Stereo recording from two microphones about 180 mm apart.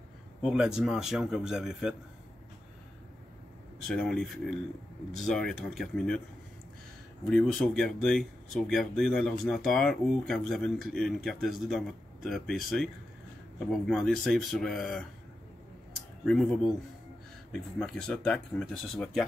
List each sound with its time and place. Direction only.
0.4 s speech: 5° right (ahead or behind)
3.8 s speech: 5° left (ahead or behind)
7.2 s speech: centre (ahead or behind)
17.5 s speech: 5° left (ahead or behind)